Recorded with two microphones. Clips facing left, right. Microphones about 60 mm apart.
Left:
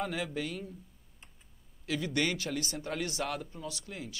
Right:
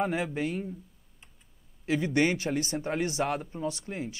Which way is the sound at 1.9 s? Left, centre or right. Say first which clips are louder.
Right 6 dB; right.